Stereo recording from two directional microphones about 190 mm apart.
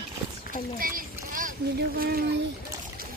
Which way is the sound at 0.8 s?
45° right (ahead or behind).